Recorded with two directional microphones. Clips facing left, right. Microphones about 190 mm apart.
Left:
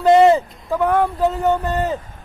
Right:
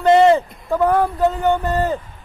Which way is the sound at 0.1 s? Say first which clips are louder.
Even; 5° left (ahead or behind).